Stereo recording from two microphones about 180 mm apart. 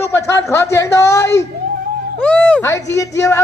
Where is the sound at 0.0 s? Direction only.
15° left (ahead or behind).